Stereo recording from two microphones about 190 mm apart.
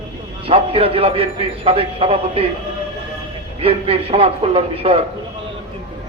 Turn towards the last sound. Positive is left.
turn(degrees=-30)  # may be behind; listen again after turning